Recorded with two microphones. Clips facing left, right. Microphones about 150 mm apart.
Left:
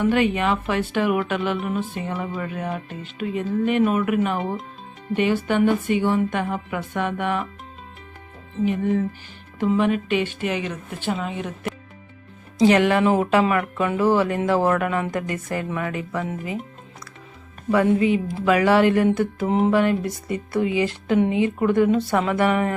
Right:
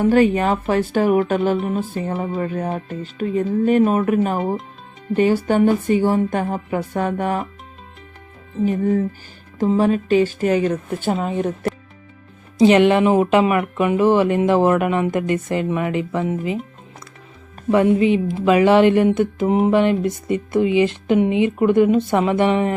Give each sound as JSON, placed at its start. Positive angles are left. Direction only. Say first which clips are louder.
{"t": 0.0, "sound": "speech", "louder": "right 5 dB", "side_deg": -40}
{"t": 8.6, "sound": "speech", "louder": "right 3 dB", "side_deg": -40}
{"t": 12.5, "sound": "speech", "louder": "right 4 dB", "side_deg": -20}
{"t": 17.7, "sound": "speech", "louder": "right 3 dB", "side_deg": -20}